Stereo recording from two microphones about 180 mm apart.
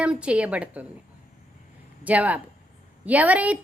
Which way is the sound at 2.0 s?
10° right (ahead or behind).